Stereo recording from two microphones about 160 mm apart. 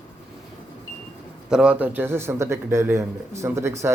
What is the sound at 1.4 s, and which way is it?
A man's voice, 5° right (ahead or behind).